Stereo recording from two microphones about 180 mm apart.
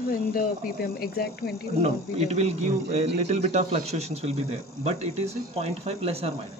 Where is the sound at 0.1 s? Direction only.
55° left (ahead or behind).